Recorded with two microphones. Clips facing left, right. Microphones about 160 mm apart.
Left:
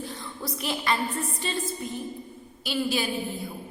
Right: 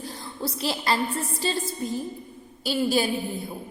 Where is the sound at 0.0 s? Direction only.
35° right (ahead or behind).